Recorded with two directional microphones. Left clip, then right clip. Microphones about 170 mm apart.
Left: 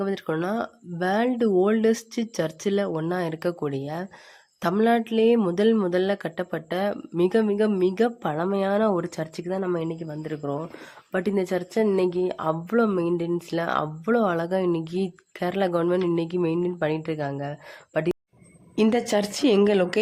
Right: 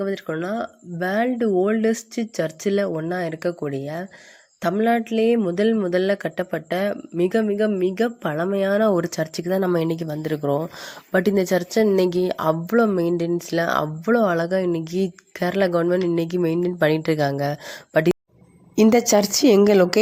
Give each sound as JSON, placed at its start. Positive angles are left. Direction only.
{"t": 0.0, "sound": "speech", "side_deg": 0}